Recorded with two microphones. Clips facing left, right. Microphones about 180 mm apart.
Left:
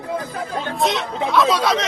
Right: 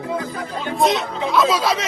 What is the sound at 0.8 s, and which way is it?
Speech, centre (ahead or behind).